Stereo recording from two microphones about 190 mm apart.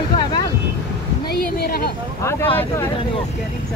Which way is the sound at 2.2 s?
10° left (ahead or behind).